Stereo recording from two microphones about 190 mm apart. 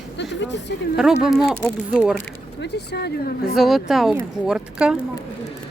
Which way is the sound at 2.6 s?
60° left (ahead or behind).